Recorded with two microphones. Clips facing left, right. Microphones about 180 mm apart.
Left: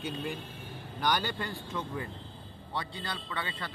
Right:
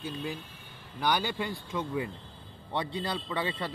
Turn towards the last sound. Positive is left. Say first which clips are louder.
# right 6 dB
turn(degrees=-25)  # may be behind; listen again after turning